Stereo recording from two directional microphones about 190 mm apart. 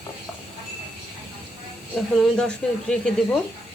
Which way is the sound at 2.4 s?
5° left (ahead or behind).